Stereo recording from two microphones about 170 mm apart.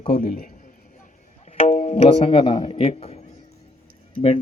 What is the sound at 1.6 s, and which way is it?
A man's voice, 40° left (ahead or behind).